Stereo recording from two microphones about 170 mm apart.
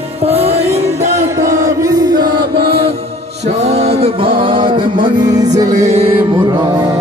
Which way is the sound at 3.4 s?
40° right (ahead or behind).